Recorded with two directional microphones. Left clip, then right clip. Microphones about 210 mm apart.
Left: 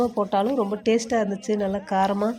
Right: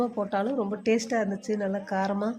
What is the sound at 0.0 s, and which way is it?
Speech, 15° left (ahead or behind).